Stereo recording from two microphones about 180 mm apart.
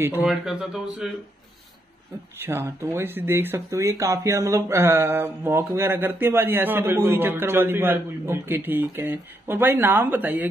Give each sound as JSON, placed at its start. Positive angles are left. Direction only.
{"t": 0.2, "sound": "speech", "side_deg": 0}
{"t": 2.3, "sound": "speech", "side_deg": -15}